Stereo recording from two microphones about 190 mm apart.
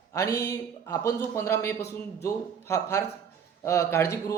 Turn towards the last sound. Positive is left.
turn(degrees=15)  # may be behind; listen again after turning